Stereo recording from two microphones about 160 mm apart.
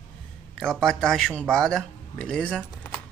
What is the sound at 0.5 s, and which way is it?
Speech, 5° left (ahead or behind).